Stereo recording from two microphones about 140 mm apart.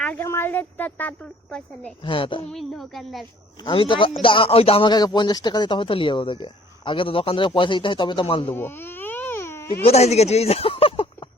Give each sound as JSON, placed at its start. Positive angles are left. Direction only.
{"t": 0.0, "sound": "a woman's voice", "side_deg": 15}
{"t": 2.0, "sound": "a man's voice", "side_deg": 40}
{"t": 2.5, "sound": "a woman's voice", "side_deg": 0}
{"t": 3.6, "sound": "a man's voice", "side_deg": 40}
{"t": 8.5, "sound": "baby cry", "side_deg": 15}
{"t": 9.8, "sound": "speech", "side_deg": 50}